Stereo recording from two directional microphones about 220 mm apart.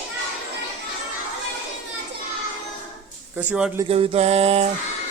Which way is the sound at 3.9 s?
25° right (ahead or behind).